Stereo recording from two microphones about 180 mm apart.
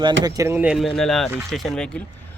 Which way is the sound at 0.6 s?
Centre (ahead or behind).